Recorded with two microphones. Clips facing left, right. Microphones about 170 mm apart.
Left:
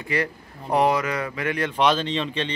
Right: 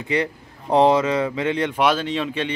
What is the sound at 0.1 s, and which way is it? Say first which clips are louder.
Speech: right 3 dB; 20° right (ahead or behind).